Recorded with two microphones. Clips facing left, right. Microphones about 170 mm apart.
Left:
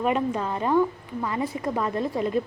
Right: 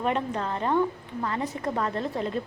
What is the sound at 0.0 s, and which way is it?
A woman's voice, 10° left (ahead or behind).